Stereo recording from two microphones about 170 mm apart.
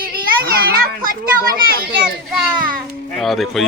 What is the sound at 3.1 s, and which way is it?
Speech, centre (ahead or behind).